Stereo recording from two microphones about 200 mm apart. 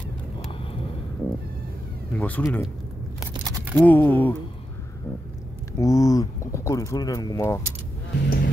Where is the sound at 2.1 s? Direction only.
5° left (ahead or behind).